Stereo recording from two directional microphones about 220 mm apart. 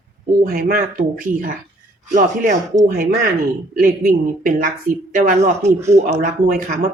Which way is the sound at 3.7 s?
40° right (ahead or behind).